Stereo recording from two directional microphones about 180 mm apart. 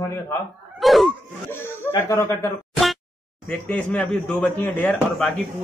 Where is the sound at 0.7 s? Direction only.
Centre (ahead or behind).